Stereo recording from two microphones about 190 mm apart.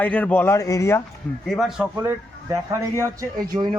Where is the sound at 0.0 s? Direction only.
10° left (ahead or behind).